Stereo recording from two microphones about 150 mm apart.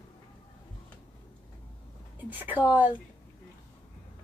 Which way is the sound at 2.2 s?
10° right (ahead or behind).